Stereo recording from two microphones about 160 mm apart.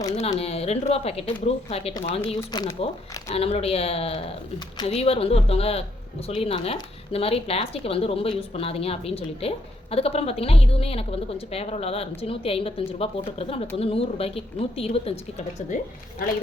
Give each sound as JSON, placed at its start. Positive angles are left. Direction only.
{"t": 0.3, "sound": "speech", "side_deg": 40}
{"t": 2.4, "sound": "speech", "side_deg": 20}
{"t": 2.8, "sound": "speech", "side_deg": 35}